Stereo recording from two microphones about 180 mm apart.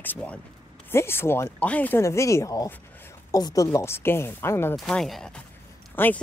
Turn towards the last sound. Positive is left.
turn(degrees=10)  # may be behind; listen again after turning